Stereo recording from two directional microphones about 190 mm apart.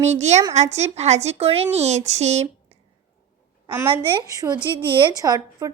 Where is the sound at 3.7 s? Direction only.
10° right (ahead or behind).